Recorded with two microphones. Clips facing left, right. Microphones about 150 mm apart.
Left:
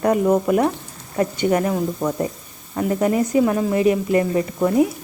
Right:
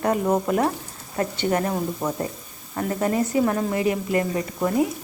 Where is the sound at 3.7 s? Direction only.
25° left (ahead or behind).